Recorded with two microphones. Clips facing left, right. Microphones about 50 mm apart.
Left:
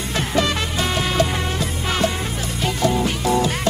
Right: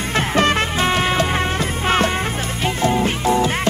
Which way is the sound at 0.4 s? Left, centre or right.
Right.